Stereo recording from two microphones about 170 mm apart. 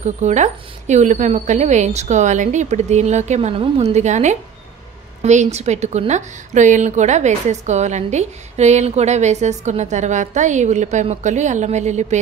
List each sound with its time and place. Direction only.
0.0 s a woman's voice: 45° right (ahead or behind)